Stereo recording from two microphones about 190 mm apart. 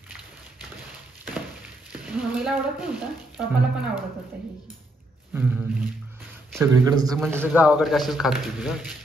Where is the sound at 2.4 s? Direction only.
5° right (ahead or behind).